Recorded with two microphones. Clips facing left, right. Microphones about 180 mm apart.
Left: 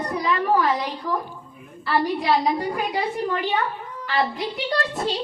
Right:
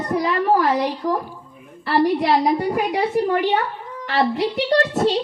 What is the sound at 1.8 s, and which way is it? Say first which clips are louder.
A woman's voice: right 4 dB; 70° right (ahead or behind).